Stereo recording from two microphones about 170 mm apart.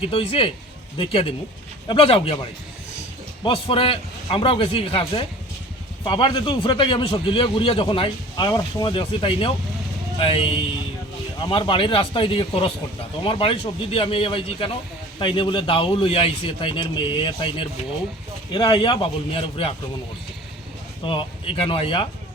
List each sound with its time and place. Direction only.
0.0 s a man's voice: 35° left (ahead or behind)
21.0 s a man's voice: 30° left (ahead or behind)